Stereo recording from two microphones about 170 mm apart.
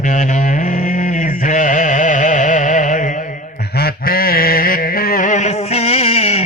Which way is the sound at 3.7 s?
65° left (ahead or behind).